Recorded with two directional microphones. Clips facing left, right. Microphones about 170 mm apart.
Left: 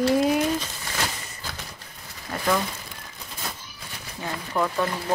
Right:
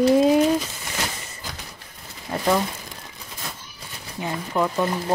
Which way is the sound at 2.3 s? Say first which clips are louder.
Right 4 dB; 25° right (ahead or behind).